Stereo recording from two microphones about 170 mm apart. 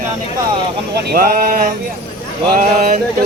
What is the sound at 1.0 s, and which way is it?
Speech, 60° right (ahead or behind).